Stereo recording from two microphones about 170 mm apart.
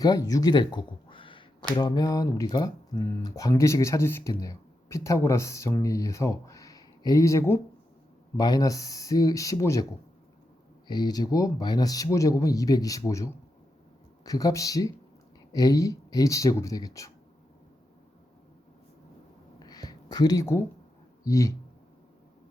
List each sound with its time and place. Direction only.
0.0 s speech: 20° left (ahead or behind)
10.8 s speech: 25° left (ahead or behind)
19.5 s a sound: 25° left (ahead or behind)
21.2 s speech: 20° left (ahead or behind)